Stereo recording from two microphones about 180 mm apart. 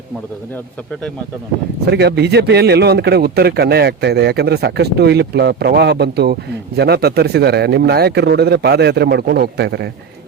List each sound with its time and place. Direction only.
1.8 s speech: 65° right (ahead or behind)